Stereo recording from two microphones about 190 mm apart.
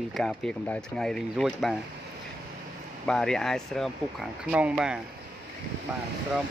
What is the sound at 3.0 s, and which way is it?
Speech, 5° left (ahead or behind).